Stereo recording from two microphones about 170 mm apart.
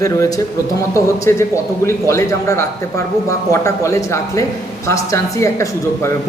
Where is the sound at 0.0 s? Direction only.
20° left (ahead or behind).